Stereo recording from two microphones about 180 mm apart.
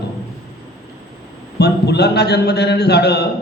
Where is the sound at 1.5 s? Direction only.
65° left (ahead or behind).